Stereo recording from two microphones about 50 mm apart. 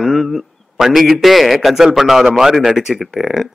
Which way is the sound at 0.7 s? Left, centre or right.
Centre.